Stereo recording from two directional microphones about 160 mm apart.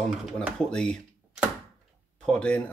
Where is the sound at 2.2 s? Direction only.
5° left (ahead or behind).